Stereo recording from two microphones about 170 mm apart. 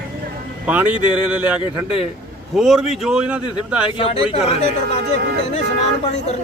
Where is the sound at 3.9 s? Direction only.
30° left (ahead or behind).